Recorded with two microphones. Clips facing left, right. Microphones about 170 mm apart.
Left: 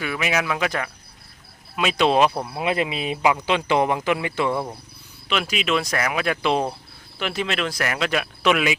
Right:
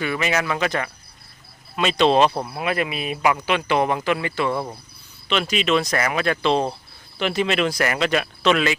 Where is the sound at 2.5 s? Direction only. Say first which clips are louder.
Left 1 dB; 20° left (ahead or behind).